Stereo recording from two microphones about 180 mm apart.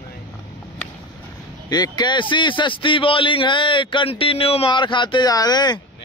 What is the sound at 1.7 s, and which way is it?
A man's voice, 25° left (ahead or behind).